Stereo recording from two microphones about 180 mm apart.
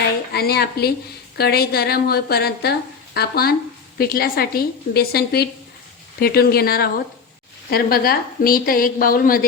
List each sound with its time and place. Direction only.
0.3 s a woman's voice: 60° left (ahead or behind)